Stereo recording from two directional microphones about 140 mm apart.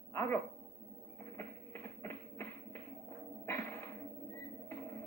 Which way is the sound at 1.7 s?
15° left (ahead or behind).